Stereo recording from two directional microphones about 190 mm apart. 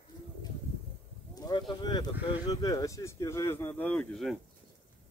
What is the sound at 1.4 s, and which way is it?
Speech, 20° left (ahead or behind).